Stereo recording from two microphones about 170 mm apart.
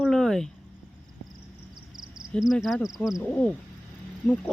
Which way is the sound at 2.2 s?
Centre (ahead or behind).